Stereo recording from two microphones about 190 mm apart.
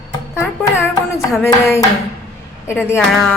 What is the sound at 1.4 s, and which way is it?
Chopping, 15° left (ahead or behind).